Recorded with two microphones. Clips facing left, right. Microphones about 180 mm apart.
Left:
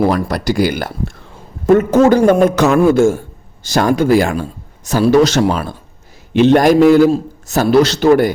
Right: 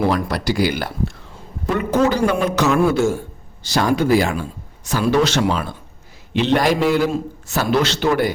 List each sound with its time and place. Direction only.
0.0 s speech: 45° left (ahead or behind)